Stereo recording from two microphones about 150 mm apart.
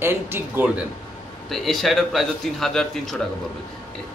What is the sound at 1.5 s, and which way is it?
A man's voice, centre (ahead or behind).